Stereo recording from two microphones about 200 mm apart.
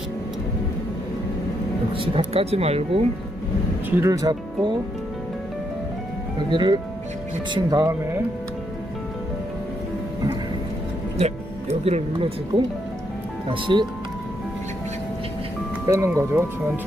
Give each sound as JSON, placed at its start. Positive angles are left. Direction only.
{"t": 2.0, "sound": "speech", "side_deg": -30}
{"t": 3.8, "sound": "speech", "side_deg": -15}
{"t": 6.5, "sound": "speech", "side_deg": -25}
{"t": 11.7, "sound": "speech", "side_deg": -30}
{"t": 13.5, "sound": "speech", "side_deg": -25}
{"t": 15.9, "sound": "speech", "side_deg": -15}